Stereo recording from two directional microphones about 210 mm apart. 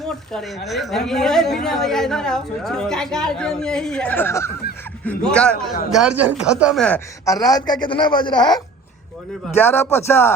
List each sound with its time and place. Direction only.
0.0 s a woman's voice: centre (ahead or behind)